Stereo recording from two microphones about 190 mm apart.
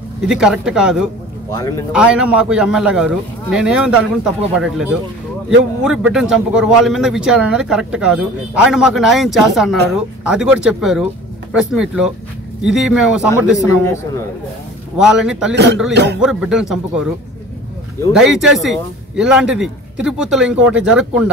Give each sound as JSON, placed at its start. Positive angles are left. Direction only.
{"t": 0.3, "sound": "speech", "side_deg": -5}
{"t": 1.5, "sound": "a man's voice", "side_deg": 20}
{"t": 1.9, "sound": "speech", "side_deg": -5}
{"t": 5.9, "sound": "speech", "side_deg": 0}
{"t": 15.0, "sound": "speech", "side_deg": -5}
{"t": 15.5, "sound": "a man's voice", "side_deg": -60}
{"t": 16.2, "sound": "speech", "side_deg": -5}
{"t": 18.1, "sound": "speech", "side_deg": 0}